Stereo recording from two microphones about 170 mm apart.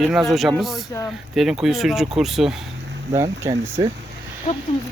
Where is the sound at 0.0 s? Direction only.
Centre (ahead or behind).